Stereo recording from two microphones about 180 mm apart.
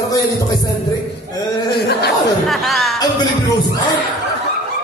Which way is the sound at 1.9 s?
65° left (ahead or behind).